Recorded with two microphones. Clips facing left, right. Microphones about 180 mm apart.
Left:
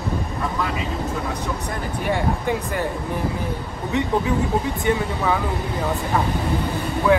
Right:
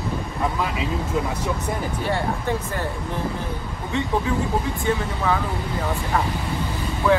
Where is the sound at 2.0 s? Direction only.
15° left (ahead or behind).